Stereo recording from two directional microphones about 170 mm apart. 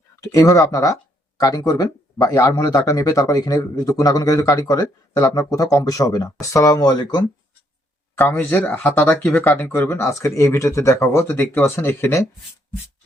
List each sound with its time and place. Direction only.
0.2 s speech: 20° left (ahead or behind)
8.2 s speech: 10° left (ahead or behind)